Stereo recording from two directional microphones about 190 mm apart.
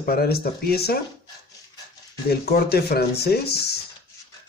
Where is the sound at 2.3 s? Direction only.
55° left (ahead or behind).